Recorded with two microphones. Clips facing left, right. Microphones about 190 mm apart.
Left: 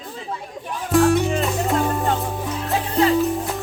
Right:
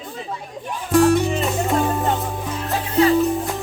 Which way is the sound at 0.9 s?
Centre (ahead or behind).